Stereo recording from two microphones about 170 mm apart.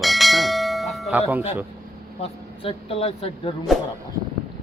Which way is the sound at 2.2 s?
35° left (ahead or behind).